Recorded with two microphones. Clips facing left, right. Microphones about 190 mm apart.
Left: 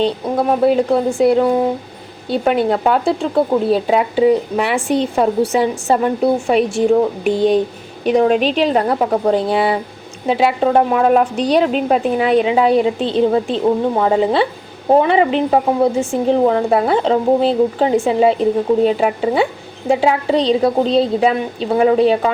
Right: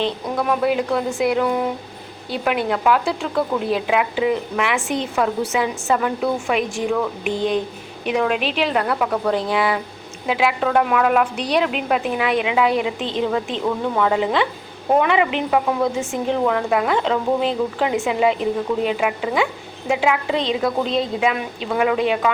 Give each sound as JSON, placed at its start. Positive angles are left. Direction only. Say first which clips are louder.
{"t": 0.0, "sound": "speech", "louder": "left 5 dB", "side_deg": 30}